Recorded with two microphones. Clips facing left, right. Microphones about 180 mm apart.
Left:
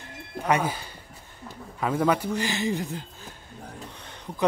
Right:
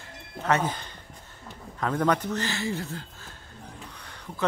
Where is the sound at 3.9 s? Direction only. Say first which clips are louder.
Left 2 dB; 20° left (ahead or behind).